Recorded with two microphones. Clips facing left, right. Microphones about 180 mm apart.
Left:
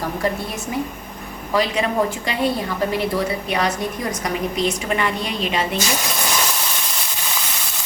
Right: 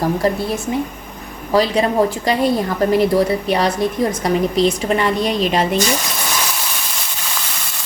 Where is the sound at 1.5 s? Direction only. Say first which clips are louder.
Right 5 dB; 35° right (ahead or behind).